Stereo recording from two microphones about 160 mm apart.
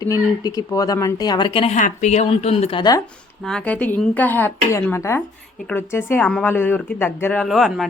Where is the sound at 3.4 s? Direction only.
5° left (ahead or behind).